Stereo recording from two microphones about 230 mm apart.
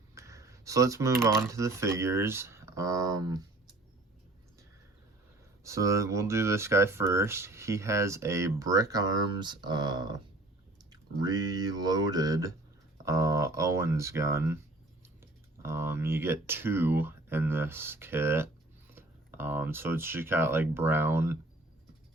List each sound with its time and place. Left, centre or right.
0.1 s a sound: centre
1.4 s speech: centre
5.6 s speech: centre
11.2 s speech: centre